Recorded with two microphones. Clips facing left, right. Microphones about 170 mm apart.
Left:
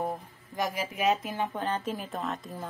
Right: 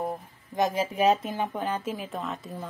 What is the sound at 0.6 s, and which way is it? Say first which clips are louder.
Speech: right 6 dB; 25° right (ahead or behind).